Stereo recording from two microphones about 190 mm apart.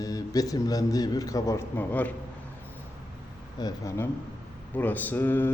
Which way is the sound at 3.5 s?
20° left (ahead or behind).